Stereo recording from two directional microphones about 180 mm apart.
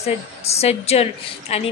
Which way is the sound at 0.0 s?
35° left (ahead or behind).